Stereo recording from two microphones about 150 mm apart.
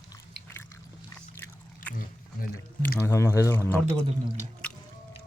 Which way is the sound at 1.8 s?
65° left (ahead or behind).